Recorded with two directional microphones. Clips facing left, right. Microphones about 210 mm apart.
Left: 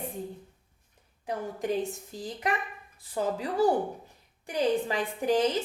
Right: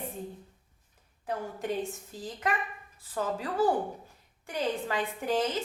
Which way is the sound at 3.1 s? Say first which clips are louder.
Left 2 dB; 15° left (ahead or behind).